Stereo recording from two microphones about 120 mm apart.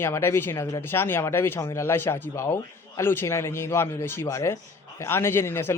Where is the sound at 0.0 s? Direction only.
20° left (ahead or behind).